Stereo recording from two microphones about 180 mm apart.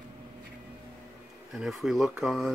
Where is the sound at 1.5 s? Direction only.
Centre (ahead or behind).